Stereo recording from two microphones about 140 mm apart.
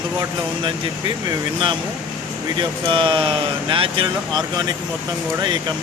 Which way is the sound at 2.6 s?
35° right (ahead or behind).